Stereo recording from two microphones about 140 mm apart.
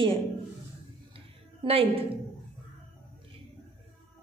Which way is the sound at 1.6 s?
45° right (ahead or behind).